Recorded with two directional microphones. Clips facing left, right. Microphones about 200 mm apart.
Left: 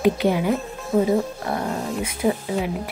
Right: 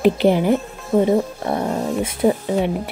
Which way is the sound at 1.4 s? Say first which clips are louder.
Right 4 dB; 20° right (ahead or behind).